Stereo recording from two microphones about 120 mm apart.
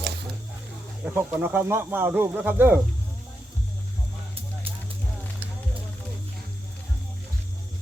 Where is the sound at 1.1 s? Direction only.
15° right (ahead or behind).